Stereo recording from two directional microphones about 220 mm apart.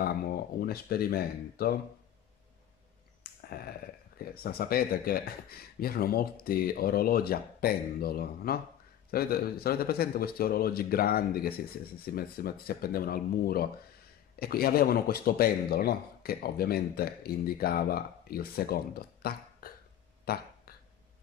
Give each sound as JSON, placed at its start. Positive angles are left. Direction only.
{"t": 0.0, "sound": "speech", "side_deg": 45}
{"t": 3.3, "sound": "a sound", "side_deg": 45}
{"t": 4.2, "sound": "speech", "side_deg": 45}
{"t": 20.3, "sound": "burping", "side_deg": 45}